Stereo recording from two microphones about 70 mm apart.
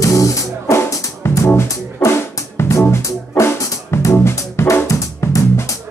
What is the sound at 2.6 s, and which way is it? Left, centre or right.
Music, left.